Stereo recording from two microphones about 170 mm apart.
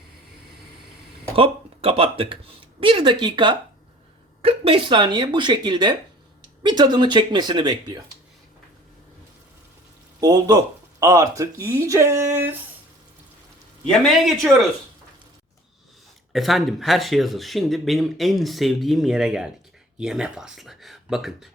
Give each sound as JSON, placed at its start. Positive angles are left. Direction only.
{"t": 1.4, "sound": "speech", "side_deg": -35}
{"t": 10.2, "sound": "speech", "side_deg": -20}
{"t": 13.8, "sound": "speech", "side_deg": 0}
{"t": 16.3, "sound": "speech", "side_deg": 0}